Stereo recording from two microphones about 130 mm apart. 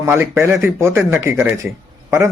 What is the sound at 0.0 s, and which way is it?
A man's voice, 20° right (ahead or behind).